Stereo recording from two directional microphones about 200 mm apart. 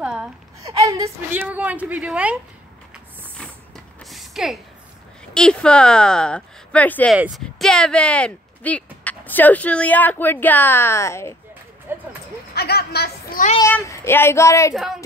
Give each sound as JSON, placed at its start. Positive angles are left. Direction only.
{"t": 0.0, "sound": "babbling", "side_deg": -5}
{"t": 0.7, "sound": "a woman's voice", "side_deg": -15}
{"t": 3.3, "sound": "a sound", "side_deg": 0}
{"t": 5.3, "sound": "speech", "side_deg": 5}
{"t": 11.9, "sound": "a sound", "side_deg": -10}
{"t": 12.5, "sound": "a woman's voice", "side_deg": 50}
{"t": 13.6, "sound": "speech", "side_deg": 15}